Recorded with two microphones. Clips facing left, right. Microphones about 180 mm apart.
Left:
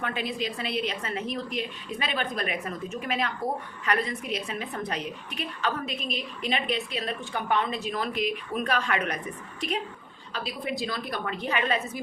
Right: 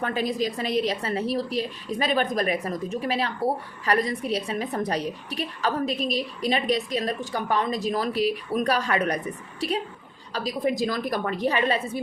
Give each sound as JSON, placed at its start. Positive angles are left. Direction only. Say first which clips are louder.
{"t": 0.0, "sound": "a woman's voice", "louder": "right 5 dB", "side_deg": -40}
{"t": 10.3, "sound": "a woman's voice", "louder": "right 7 dB", "side_deg": -40}